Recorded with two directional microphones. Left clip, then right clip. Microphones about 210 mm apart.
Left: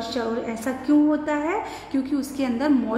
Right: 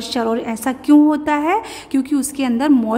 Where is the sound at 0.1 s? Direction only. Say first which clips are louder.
Right 10 dB; 40° right (ahead or behind).